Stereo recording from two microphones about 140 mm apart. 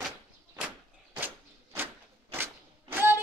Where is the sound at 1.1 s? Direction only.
15° right (ahead or behind).